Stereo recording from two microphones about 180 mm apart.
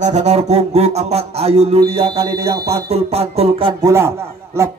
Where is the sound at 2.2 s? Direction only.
35° right (ahead or behind).